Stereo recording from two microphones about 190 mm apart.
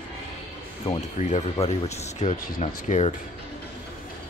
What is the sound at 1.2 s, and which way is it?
Speech, 40° left (ahead or behind).